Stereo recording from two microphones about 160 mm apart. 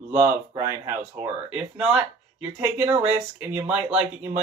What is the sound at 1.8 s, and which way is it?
Speech, 5° right (ahead or behind).